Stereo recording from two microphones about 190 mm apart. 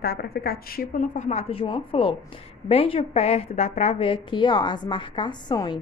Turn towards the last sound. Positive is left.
turn(degrees=25)  # may be behind; listen again after turning